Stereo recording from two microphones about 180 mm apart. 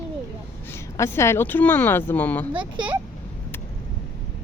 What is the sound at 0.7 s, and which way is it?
Speech, 15° left (ahead or behind).